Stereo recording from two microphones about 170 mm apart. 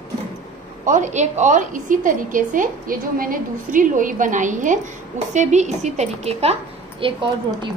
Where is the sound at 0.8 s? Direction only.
45° right (ahead or behind).